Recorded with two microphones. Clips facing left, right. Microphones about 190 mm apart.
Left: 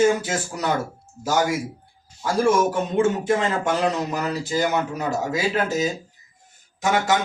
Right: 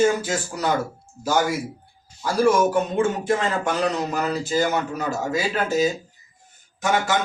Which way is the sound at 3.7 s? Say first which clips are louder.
Left 1 dB; 20° left (ahead or behind).